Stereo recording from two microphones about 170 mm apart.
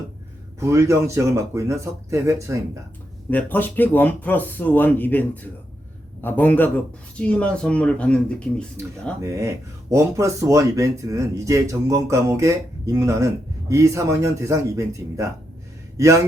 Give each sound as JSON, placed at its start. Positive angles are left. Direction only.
{"t": 0.6, "sound": "speech", "side_deg": -15}
{"t": 3.2, "sound": "speech", "side_deg": 10}
{"t": 9.2, "sound": "speech", "side_deg": -20}